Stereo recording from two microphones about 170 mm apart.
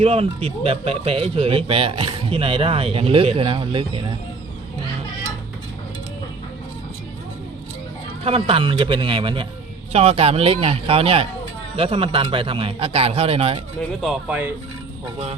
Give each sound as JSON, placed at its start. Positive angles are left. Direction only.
{"t": 0.0, "sound": "speech", "side_deg": -35}
{"t": 8.2, "sound": "speech", "side_deg": -35}
{"t": 14.0, "sound": "speech", "side_deg": -5}
{"t": 15.0, "sound": "speech", "side_deg": -35}